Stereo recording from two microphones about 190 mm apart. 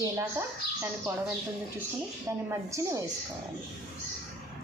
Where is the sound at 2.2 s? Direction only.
15° right (ahead or behind).